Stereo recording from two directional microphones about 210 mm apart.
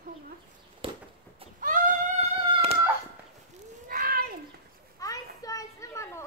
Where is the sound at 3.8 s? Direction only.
45° right (ahead or behind).